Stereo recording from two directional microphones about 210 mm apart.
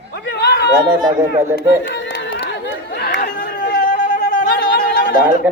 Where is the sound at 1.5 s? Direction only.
60° left (ahead or behind); by 4.4 s 40° left (ahead or behind).